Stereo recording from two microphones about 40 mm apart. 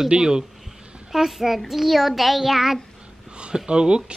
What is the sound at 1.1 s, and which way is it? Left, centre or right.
A child's voice, centre.